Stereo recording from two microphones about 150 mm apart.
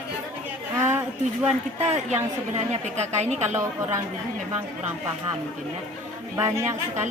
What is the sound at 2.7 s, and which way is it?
Speech, 45° right (ahead or behind).